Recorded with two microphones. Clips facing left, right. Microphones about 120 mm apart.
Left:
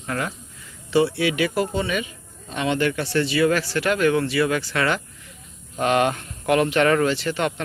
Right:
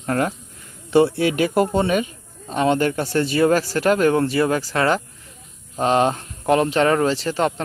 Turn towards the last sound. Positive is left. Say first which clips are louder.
# right 3 dB
turn(degrees=-35)  # may be behind; listen again after turning